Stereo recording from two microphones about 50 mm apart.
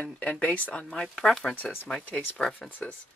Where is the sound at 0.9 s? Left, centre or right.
Centre.